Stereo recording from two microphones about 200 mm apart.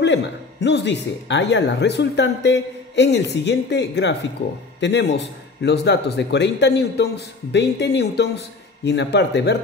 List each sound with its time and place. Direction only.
0.0 s speech: 60° left (ahead or behind)